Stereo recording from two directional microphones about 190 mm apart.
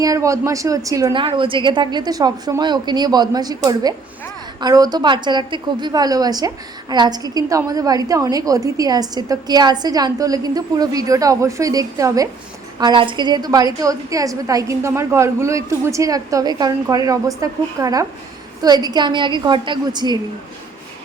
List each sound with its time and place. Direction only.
0.0 s a woman's voice: 15° right (ahead or behind)